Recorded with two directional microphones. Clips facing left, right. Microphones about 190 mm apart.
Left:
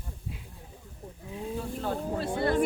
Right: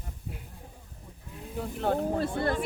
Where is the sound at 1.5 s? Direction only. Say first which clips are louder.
Right 4 dB; 60° right (ahead or behind).